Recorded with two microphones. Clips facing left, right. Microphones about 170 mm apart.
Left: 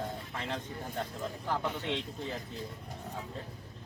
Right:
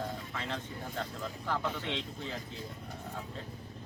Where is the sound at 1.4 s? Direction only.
15° left (ahead or behind).